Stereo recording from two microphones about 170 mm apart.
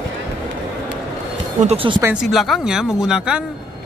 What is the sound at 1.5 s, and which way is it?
Speech, 35° right (ahead or behind).